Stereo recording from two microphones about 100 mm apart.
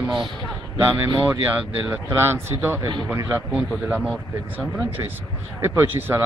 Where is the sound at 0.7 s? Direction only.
20° right (ahead or behind).